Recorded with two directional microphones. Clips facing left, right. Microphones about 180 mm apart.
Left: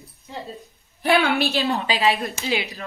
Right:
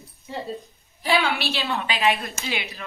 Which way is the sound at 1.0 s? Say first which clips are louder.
Left 3 dB; 60° left (ahead or behind).